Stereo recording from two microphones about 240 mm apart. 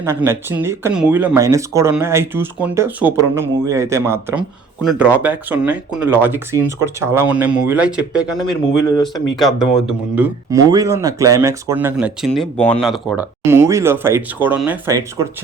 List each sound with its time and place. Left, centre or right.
0.0 s speech: centre
8.8 s speech: centre
9.3 s speech: centre
10.5 s speech: centre
13.5 s speech: centre